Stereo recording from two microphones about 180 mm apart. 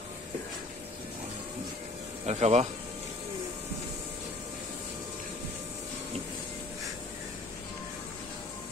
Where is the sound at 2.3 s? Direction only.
40° right (ahead or behind).